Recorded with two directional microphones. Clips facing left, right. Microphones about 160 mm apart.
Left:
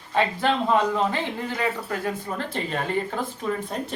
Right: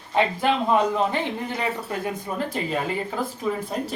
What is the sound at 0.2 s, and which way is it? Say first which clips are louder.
Speech: right 1 dB; 20° right (ahead or behind).